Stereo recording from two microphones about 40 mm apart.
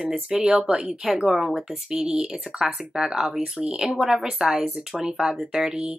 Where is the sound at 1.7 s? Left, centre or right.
Centre.